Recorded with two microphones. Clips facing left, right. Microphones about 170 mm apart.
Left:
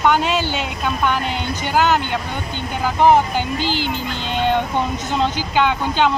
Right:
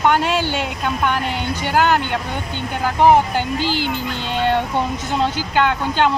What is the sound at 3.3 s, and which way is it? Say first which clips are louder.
Speech: right 1 dB; 50° right (ahead or behind).